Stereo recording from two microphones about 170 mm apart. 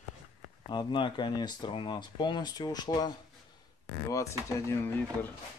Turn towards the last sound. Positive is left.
turn(degrees=15)  # may be behind; listen again after turning